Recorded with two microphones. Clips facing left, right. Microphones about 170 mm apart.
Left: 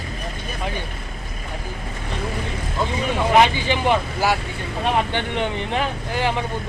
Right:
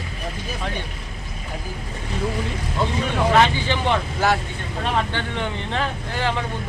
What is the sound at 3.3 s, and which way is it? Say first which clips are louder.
Speech: left 3 dB; 15° left (ahead or behind).